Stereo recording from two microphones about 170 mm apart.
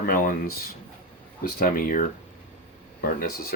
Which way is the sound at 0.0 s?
55° left (ahead or behind).